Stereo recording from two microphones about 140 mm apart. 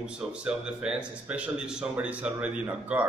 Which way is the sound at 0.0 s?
5° right (ahead or behind).